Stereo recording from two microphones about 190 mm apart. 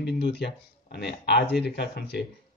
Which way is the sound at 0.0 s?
60° left (ahead or behind).